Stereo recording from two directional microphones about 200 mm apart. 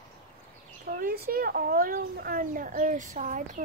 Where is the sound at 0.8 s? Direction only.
45° right (ahead or behind).